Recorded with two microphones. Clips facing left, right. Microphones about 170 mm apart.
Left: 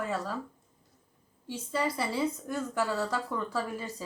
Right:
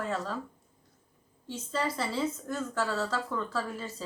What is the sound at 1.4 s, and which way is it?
A woman's voice, 10° left (ahead or behind).